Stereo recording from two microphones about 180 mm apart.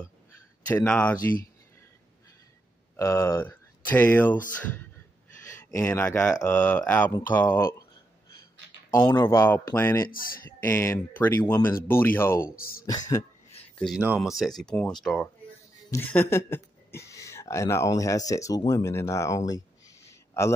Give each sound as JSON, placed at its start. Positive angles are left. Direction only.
{"t": 0.7, "sound": "speech", "side_deg": 10}
{"t": 3.0, "sound": "speech", "side_deg": 15}
{"t": 5.7, "sound": "speech", "side_deg": 15}
{"t": 8.9, "sound": "speech", "side_deg": 20}
{"t": 12.5, "sound": "speech", "side_deg": 55}
{"t": 12.8, "sound": "speech", "side_deg": 20}
{"t": 13.9, "sound": "speech", "side_deg": -5}
{"t": 20.1, "sound": "a sound", "side_deg": 15}